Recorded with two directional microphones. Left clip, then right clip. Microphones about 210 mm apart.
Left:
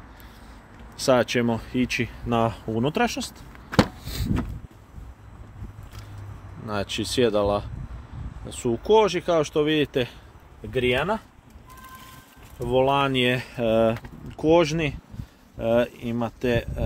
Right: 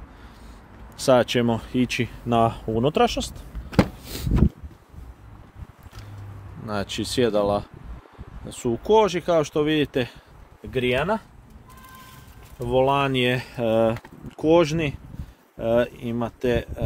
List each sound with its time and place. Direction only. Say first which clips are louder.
0.9 s speech: right 2 dB; 10° right (ahead or behind)
4.0 s a sound: even; 20° right (ahead or behind)
6.6 s speech: even; 5° right (ahead or behind)
12.5 s speech: right 1 dB; 5° right (ahead or behind)